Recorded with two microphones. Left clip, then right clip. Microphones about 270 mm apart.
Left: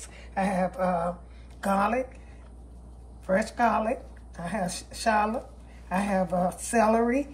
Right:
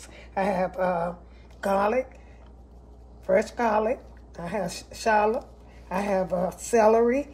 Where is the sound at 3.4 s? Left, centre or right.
Right.